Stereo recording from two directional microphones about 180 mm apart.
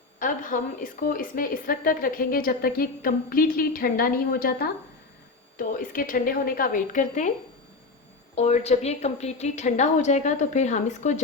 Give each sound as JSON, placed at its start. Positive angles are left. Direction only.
{"t": 0.2, "sound": "a woman's voice", "side_deg": 45}
{"t": 8.4, "sound": "a woman's voice", "side_deg": 35}